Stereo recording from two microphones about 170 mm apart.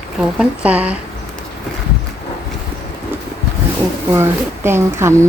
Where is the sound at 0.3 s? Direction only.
5° right (ahead or behind).